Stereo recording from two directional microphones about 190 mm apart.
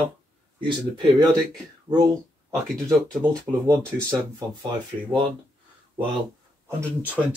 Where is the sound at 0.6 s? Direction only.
25° right (ahead or behind).